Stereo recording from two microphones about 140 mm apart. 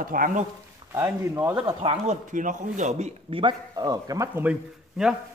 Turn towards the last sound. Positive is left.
turn(degrees=-5)  # may be behind; listen again after turning